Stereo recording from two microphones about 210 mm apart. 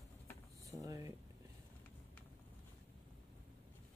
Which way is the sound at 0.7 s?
15° right (ahead or behind).